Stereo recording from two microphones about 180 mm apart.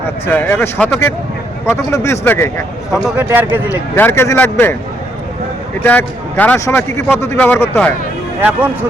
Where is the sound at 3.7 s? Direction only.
15° left (ahead or behind).